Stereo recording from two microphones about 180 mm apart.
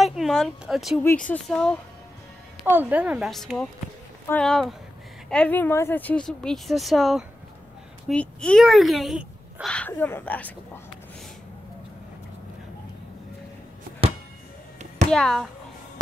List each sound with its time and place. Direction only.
0.0 s speech: centre (ahead or behind)
2.6 s a woman's voice: 10° right (ahead or behind); by 10.5 s 10° left (ahead or behind)
15.0 s speech: 5° left (ahead or behind)